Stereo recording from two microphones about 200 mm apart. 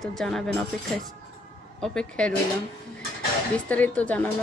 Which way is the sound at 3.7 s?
10° left (ahead or behind).